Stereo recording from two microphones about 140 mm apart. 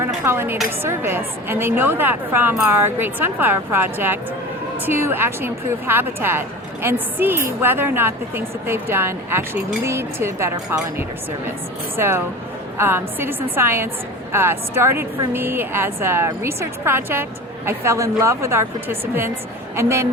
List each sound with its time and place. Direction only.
0.0 s a woman's voice: 15° right (ahead or behind)
11.9 s a woman's voice: 15° right (ahead or behind)